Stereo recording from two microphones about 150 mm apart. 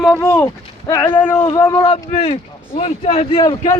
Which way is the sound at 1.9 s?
40° left (ahead or behind).